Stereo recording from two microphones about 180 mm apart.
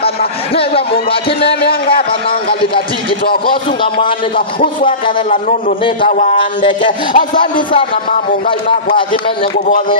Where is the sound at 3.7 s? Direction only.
30° left (ahead or behind).